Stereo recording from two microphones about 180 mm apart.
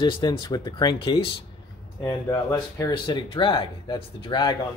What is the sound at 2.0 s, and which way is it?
Speech, 15° left (ahead or behind).